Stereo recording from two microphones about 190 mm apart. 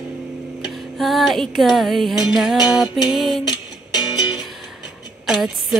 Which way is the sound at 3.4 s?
25° left (ahead or behind).